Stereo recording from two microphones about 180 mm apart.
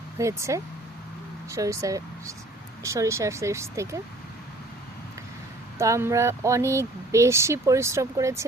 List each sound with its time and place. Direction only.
0.2 s speech: 15° right (ahead or behind)
5.8 s speech: 15° right (ahead or behind)